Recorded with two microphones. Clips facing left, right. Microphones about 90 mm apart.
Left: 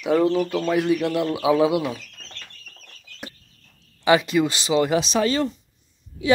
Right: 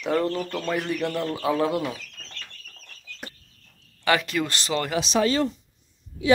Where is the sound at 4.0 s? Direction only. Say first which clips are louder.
Left 5 dB; 20° left (ahead or behind).